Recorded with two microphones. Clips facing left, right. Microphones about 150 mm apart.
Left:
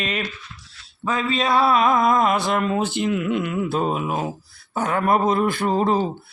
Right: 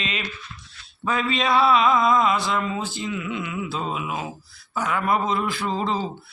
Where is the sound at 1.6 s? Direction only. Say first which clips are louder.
Left 1 dB; 50° left (ahead or behind).